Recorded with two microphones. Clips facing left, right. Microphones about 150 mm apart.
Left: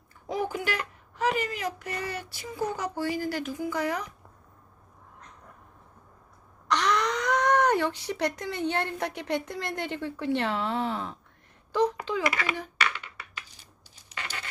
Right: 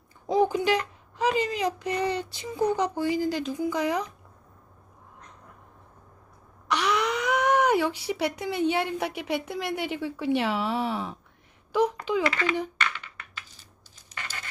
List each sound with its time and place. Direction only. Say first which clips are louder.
0.3 s speech: right 7 dB; 20° right (ahead or behind)
6.7 s speech: even; 10° right (ahead or behind)
12.2 s speech: even; 10° left (ahead or behind)
12.8 s coin: left 1 dB; 10° left (ahead or behind)